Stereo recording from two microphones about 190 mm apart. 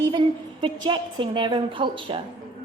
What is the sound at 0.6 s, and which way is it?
A woman's voice, 25° right (ahead or behind).